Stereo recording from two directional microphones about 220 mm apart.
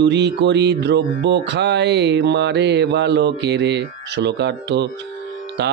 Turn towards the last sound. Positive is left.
turn(degrees=-50)  # may be behind; listen again after turning